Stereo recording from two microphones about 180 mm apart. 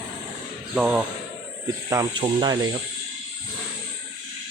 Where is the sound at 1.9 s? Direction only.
20° right (ahead or behind).